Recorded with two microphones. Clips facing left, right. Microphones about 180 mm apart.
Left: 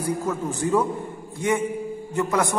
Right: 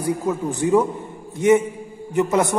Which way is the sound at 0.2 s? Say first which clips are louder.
Right 3 dB; 15° right (ahead or behind).